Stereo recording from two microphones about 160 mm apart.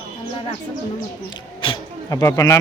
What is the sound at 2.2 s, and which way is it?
Speech, 20° left (ahead or behind).